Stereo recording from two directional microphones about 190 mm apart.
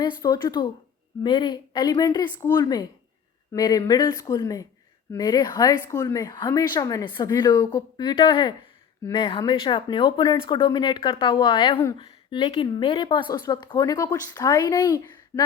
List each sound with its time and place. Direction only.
0.0 s a woman's voice: 20° left (ahead or behind)